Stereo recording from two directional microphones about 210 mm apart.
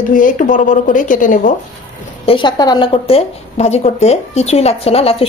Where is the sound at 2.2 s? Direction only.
25° left (ahead or behind).